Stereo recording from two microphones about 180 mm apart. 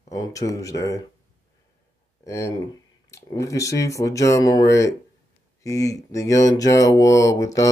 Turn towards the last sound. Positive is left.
turn(degrees=20)  # may be behind; listen again after turning